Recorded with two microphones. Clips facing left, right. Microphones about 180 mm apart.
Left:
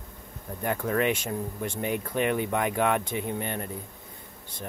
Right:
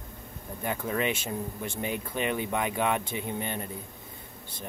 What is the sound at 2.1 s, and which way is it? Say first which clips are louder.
Speech: left 3 dB; 20° right (ahead or behind).